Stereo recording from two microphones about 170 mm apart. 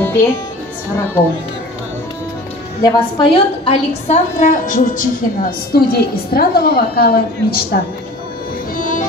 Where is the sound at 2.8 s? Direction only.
30° left (ahead or behind); by 5.0 s 50° left (ahead or behind).